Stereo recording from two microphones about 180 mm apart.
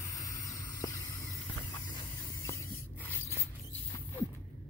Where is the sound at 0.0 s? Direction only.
20° left (ahead or behind).